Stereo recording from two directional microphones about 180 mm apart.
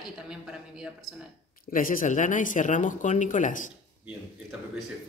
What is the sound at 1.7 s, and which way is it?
Speech, 50° left (ahead or behind).